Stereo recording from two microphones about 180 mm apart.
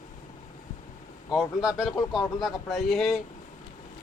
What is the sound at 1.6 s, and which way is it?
Speech, 5° right (ahead or behind).